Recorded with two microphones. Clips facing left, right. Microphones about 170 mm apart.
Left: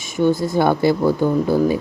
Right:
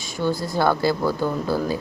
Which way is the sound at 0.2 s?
20° left (ahead or behind).